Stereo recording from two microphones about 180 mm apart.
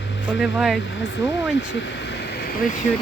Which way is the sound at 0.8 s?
85° left.